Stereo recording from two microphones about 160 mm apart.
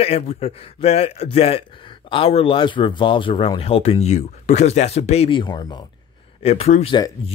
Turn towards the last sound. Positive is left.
turn(degrees=40)  # may be behind; listen again after turning